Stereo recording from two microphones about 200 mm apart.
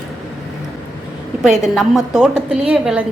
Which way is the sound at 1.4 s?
Centre (ahead or behind).